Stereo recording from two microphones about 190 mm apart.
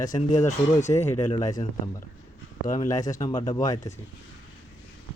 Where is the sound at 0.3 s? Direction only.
40° left (ahead or behind).